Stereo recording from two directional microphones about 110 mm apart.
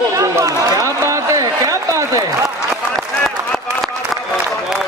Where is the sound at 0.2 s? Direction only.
35° right (ahead or behind).